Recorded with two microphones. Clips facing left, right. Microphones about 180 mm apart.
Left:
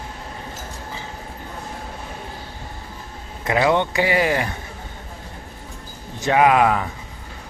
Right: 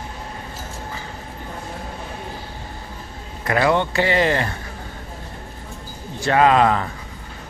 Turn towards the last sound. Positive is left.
turn(degrees=10)  # may be behind; listen again after turning